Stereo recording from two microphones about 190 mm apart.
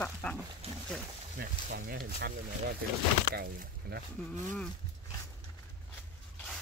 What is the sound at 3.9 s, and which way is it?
Speech, 40° right (ahead or behind).